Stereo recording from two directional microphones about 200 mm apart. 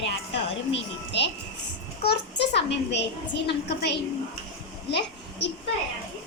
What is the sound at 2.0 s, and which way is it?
A child's voice, 55° left (ahead or behind).